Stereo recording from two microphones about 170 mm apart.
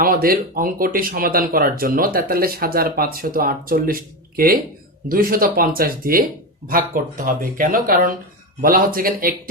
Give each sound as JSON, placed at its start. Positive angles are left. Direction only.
{"t": 0.0, "sound": "speech", "side_deg": -60}